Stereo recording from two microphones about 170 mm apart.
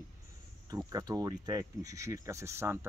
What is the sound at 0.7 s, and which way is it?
Speech, 20° right (ahead or behind).